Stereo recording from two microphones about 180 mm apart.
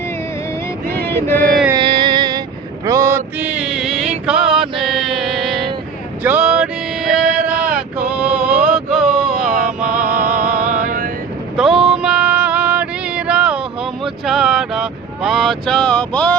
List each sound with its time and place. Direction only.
1.1 s mantra: 10° left (ahead or behind)
1.7 s music: 30° right (ahead or behind)
2.8 s mantra: 20° right (ahead or behind); by 4.1 s centre (ahead or behind)
4.3 s music: 5° right (ahead or behind)
6.2 s male singing: 10° right (ahead or behind)
7.9 s a sound: 5° right (ahead or behind)
9.5 s music: 50° right (ahead or behind)
9.9 s music: 5° right (ahead or behind)
10.7 s a sound: 50° right (ahead or behind)
11.5 s music: centre (ahead or behind)